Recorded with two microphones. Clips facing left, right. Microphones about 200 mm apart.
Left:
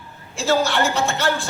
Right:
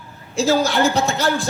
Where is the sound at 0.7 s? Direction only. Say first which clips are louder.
Right 3 dB; 40° right (ahead or behind).